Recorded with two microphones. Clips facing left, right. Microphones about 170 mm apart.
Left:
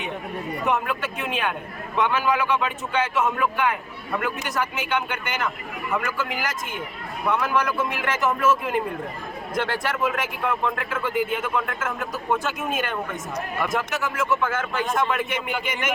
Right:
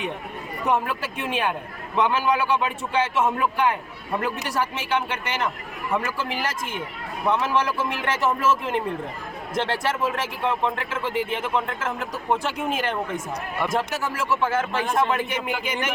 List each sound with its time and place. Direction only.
0.7 s speech: 30° right (ahead or behind)